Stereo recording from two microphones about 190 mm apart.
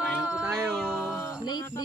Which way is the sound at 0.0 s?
5° right (ahead or behind).